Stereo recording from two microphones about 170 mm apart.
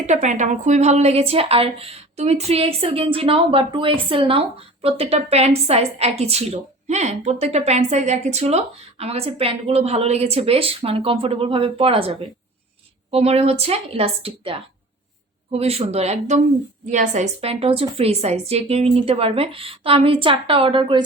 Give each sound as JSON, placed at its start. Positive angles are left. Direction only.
{"t": 0.0, "sound": "a woman's voice", "side_deg": -45}